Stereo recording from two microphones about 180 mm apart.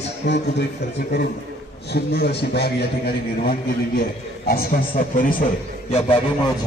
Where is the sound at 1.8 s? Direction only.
60° left (ahead or behind).